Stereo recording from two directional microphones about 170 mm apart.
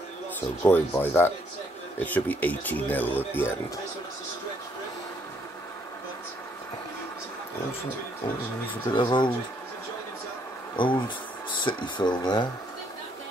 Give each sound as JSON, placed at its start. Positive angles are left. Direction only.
{"t": 0.7, "sound": "speech", "side_deg": 15}
{"t": 8.9, "sound": "speech", "side_deg": 25}
{"t": 10.8, "sound": "speech", "side_deg": 30}